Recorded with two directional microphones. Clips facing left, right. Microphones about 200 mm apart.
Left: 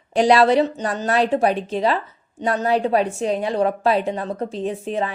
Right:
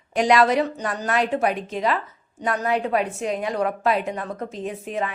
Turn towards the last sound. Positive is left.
turn(degrees=30)  # may be behind; listen again after turning